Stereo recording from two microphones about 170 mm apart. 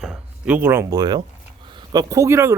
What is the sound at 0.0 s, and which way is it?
A man's voice, 5° right (ahead or behind).